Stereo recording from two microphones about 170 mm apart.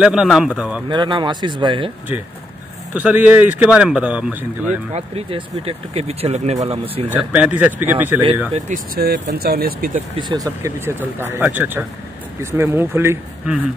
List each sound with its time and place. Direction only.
0.0 s speech: 5° right (ahead or behind)
0.8 s speech: 25° right (ahead or behind)
2.9 s speech: 10° right (ahead or behind)
4.9 s speech: 35° right (ahead or behind)
7.1 s speech: 5° right (ahead or behind)
8.5 s speech: 50° right (ahead or behind)
10.1 s speech: 25° right (ahead or behind)